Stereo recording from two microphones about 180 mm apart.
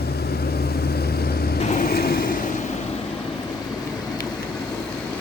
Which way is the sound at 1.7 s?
55° left (ahead or behind).